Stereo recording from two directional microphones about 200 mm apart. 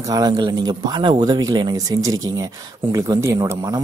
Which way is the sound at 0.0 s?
20° right (ahead or behind).